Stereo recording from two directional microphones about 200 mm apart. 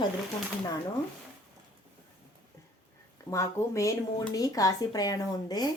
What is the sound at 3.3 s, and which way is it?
Speech, 15° left (ahead or behind).